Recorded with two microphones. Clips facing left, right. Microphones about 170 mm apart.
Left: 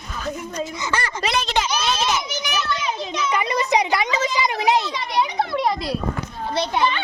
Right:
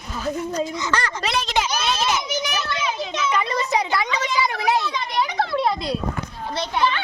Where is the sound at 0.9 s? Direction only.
5° left (ahead or behind).